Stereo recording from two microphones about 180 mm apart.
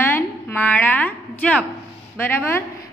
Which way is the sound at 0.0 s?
15° left (ahead or behind).